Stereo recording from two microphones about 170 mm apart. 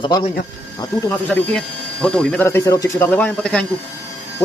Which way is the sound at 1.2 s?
5° left (ahead or behind).